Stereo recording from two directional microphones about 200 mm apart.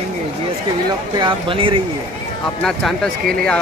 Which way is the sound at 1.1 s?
25° right (ahead or behind).